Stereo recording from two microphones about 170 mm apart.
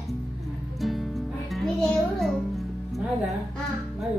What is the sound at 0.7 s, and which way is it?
Music, centre (ahead or behind).